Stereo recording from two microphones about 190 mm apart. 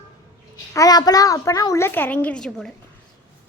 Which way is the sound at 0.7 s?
20° left (ahead or behind).